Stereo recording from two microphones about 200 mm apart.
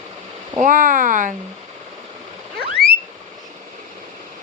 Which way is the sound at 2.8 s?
50° left (ahead or behind).